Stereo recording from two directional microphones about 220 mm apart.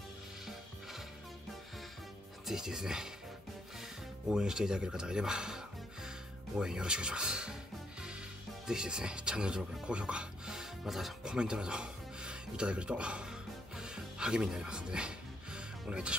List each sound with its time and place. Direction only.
2.4 s speech: centre (ahead or behind)
4.3 s speech: 5° right (ahead or behind)
6.6 s speech: 5° right (ahead or behind)
8.6 s speech: 5° right (ahead or behind)